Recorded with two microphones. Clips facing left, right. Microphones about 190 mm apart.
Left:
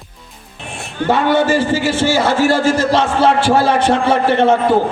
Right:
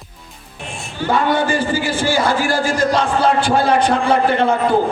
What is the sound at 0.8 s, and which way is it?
Music, 65° left (ahead or behind).